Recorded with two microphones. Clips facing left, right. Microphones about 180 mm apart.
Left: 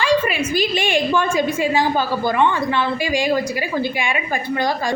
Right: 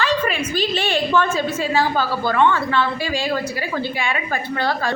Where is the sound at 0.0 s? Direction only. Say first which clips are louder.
Left 3 dB; 10° left (ahead or behind).